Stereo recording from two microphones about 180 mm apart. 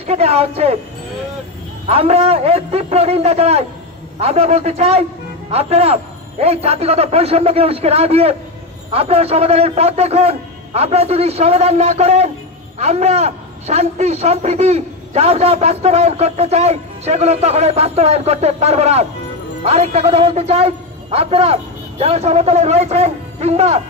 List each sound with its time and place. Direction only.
0.0 s a man's voice: 35° right (ahead or behind)
1.9 s a man's voice: 35° right (ahead or behind)